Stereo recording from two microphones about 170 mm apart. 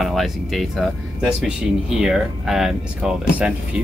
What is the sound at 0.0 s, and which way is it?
Speech, centre (ahead or behind).